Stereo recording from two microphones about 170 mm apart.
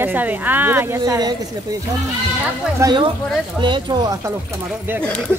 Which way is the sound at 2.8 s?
20° right (ahead or behind).